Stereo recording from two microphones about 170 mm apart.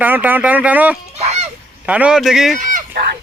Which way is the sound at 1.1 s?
40° right (ahead or behind).